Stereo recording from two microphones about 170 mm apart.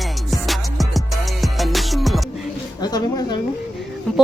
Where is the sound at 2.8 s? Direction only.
25° left (ahead or behind).